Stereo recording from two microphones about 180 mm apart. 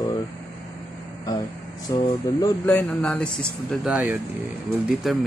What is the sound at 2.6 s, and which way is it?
Speech, 10° left (ahead or behind).